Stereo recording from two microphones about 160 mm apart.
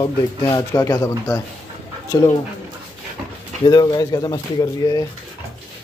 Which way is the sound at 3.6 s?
30° left (ahead or behind).